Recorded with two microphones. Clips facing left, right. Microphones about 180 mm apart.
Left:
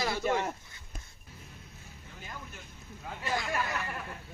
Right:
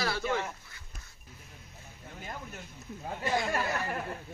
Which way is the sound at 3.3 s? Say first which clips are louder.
Right 2 dB; 25° right (ahead or behind).